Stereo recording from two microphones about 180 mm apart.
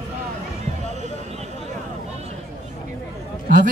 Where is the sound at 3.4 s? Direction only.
50° right (ahead or behind).